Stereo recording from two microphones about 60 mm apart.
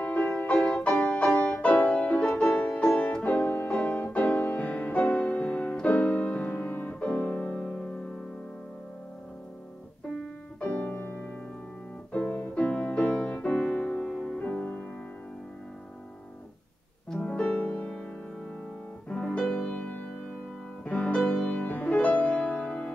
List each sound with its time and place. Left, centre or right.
0.0 s music: left
10.6 s music: left
17.1 s music: centre
19.0 s music: centre